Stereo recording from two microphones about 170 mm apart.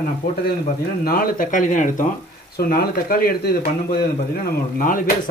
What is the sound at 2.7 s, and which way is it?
Speech, 60° left (ahead or behind).